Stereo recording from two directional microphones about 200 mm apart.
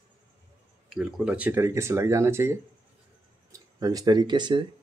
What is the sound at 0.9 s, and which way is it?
Speech, 5° right (ahead or behind).